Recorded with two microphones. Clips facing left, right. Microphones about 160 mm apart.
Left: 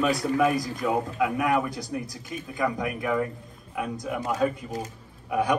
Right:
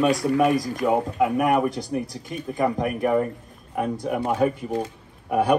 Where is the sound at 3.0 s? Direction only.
40° right (ahead or behind).